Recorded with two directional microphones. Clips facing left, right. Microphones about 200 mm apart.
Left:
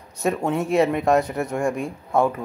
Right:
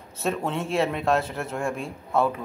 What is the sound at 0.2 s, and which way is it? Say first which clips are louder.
Speech: left 5 dB; 10° left (ahead or behind).